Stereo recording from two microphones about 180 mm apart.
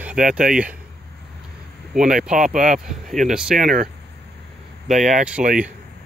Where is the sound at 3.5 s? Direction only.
45° right (ahead or behind).